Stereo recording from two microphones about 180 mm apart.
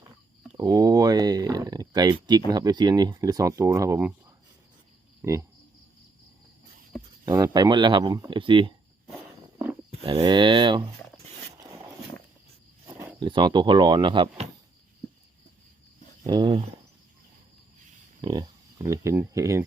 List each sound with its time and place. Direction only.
0.5 s speech: 20° right (ahead or behind)
5.2 s speech: 15° right (ahead or behind)
7.3 s speech: 20° right (ahead or behind)
10.0 s speech: 25° right (ahead or behind)
12.9 s a sound: 10° right (ahead or behind)
13.1 s speech: 25° right (ahead or behind)
16.2 s speech: 25° right (ahead or behind)
18.2 s speech: 20° right (ahead or behind)